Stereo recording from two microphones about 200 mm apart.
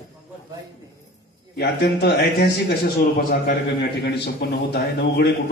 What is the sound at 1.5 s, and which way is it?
A man's voice, 55° left (ahead or behind).